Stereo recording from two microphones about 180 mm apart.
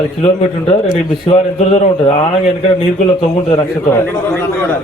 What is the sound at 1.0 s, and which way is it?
Speech, 25° left (ahead or behind).